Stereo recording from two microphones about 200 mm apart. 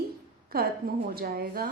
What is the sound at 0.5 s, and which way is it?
A woman's voice, 50° right (ahead or behind).